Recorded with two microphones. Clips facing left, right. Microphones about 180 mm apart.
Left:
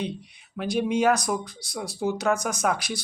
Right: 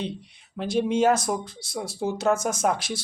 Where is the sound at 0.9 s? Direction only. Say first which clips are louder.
Right 1 dB; 25° right (ahead or behind).